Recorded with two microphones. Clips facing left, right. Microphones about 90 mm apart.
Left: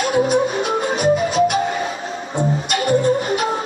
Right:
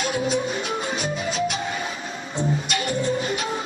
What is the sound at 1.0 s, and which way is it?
Music, 55° left (ahead or behind).